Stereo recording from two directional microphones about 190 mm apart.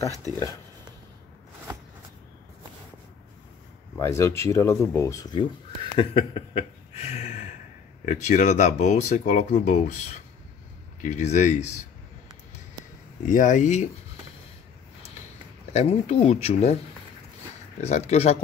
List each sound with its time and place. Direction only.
3.9 s speech: 15° left (ahead or behind); by 11.7 s 40° left (ahead or behind)
13.2 s speech: 40° left (ahead or behind)
15.7 s speech: 35° left (ahead or behind)
17.7 s speech: 35° left (ahead or behind)